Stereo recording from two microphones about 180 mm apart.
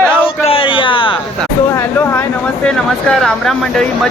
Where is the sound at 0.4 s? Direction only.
30° left (ahead or behind).